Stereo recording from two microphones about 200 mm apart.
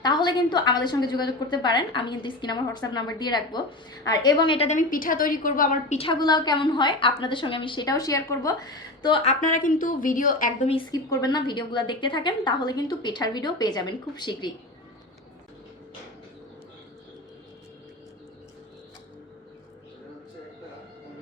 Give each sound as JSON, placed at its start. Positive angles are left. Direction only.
{"t": 0.0, "sound": "a woman's voice", "side_deg": 20}
{"t": 6.0, "sound": "a woman's voice", "side_deg": 25}
{"t": 9.4, "sound": "a woman's voice", "side_deg": 40}
{"t": 10.7, "sound": "a woman's voice", "side_deg": 20}